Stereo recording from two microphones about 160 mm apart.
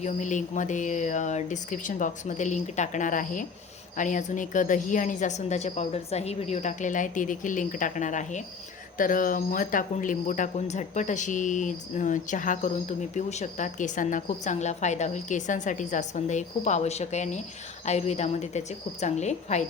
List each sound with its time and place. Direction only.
0.0 s speech: 50° left (ahead or behind)